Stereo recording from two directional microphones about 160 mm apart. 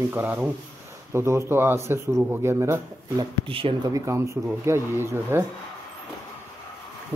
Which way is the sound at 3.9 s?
20° right (ahead or behind).